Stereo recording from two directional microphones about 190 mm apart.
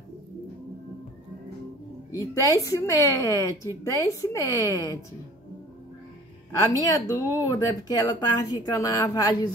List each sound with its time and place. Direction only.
2.1 s a woman's voice: 20° left (ahead or behind)
6.6 s speech: 20° left (ahead or behind)